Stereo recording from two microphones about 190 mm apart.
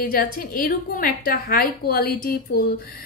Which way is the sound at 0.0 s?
50° left (ahead or behind).